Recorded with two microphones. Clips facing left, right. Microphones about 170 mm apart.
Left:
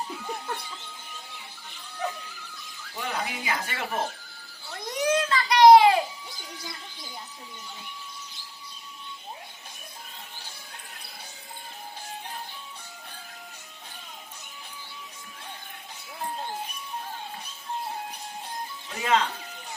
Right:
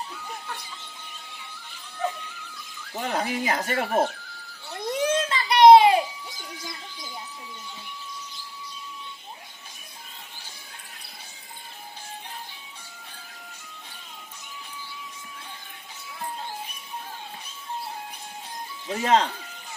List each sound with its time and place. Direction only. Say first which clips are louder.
2.9 s speech: right 5 dB; 45° right (ahead or behind)
4.9 s a sound: left 1 dB; 25° right (ahead or behind)
18.9 s speech: right 4 dB; 40° right (ahead or behind)